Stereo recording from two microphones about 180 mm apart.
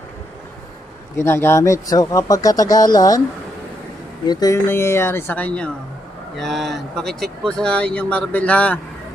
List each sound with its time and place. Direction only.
1.1 s speech: 15° left (ahead or behind)
4.3 s speech: 20° left (ahead or behind)